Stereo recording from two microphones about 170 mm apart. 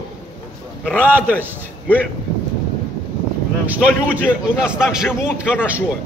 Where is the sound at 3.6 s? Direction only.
10° right (ahead or behind).